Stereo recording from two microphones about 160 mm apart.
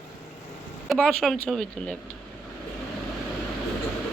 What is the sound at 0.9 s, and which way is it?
A woman's voice, centre (ahead or behind).